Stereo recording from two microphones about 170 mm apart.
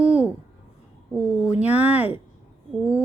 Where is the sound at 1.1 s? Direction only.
15° left (ahead or behind).